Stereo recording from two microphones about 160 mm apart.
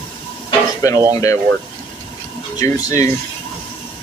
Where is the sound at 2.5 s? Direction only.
20° left (ahead or behind).